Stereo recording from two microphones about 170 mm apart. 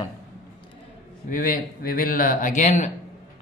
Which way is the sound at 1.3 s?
55° left (ahead or behind).